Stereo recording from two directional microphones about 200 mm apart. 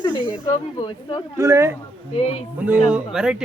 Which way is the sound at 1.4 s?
15° right (ahead or behind).